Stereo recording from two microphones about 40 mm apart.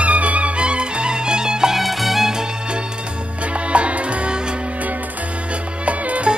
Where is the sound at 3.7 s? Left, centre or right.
Right.